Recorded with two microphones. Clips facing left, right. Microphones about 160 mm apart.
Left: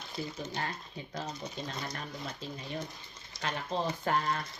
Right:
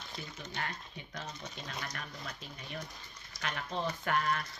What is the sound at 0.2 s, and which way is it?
A woman's voice, 30° left (ahead or behind).